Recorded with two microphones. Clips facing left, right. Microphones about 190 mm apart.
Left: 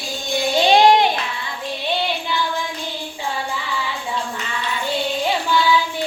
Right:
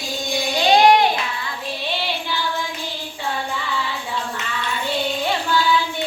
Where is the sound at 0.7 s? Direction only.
20° left (ahead or behind).